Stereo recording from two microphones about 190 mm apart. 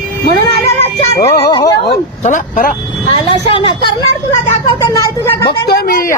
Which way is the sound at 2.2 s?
45° left (ahead or behind).